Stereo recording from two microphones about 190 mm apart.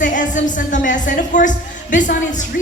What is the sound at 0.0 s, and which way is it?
A woman's voice, 40° left (ahead or behind).